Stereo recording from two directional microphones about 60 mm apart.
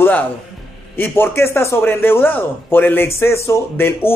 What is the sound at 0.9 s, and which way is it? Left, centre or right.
Speech, left.